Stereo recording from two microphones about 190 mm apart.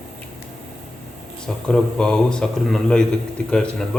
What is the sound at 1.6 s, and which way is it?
Speech, 5° left (ahead or behind).